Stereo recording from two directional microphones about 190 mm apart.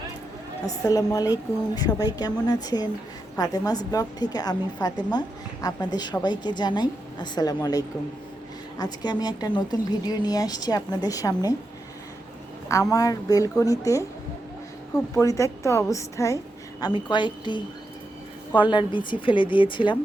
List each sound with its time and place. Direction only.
0.7 s speech: 20° left (ahead or behind)
12.6 s a woman's voice: 15° left (ahead or behind)
15.1 s a woman's voice: 15° left (ahead or behind)